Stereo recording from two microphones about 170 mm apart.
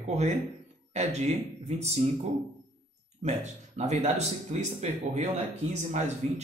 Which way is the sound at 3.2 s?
40° right (ahead or behind).